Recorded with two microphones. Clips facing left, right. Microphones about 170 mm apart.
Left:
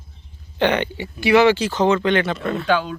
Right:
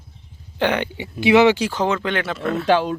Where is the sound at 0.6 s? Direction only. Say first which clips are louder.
Left 2 dB; 10° right (ahead or behind).